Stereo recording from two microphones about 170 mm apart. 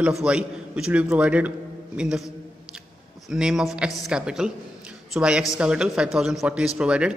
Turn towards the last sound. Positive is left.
turn(degrees=-5)  # may be behind; listen again after turning